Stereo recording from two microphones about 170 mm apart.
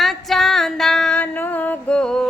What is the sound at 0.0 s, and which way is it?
Female singing, centre (ahead or behind).